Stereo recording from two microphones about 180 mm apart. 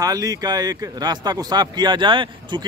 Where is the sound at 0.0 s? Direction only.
20° right (ahead or behind).